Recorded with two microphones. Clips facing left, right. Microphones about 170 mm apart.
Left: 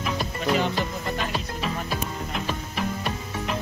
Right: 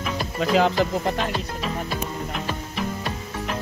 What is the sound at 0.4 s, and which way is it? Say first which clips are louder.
Music: right 5 dB; 90° right.